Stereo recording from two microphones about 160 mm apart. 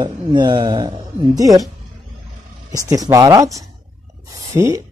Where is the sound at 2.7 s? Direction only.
20° right (ahead or behind).